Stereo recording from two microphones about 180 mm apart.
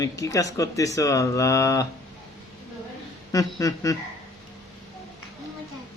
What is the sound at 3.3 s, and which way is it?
Speech, 20° left (ahead or behind).